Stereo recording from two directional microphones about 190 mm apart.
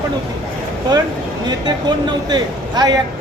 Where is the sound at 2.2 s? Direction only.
20° right (ahead or behind).